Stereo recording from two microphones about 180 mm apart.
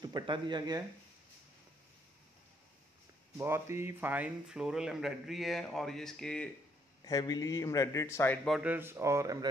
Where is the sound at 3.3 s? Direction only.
15° right (ahead or behind); by 6.5 s 5° left (ahead or behind).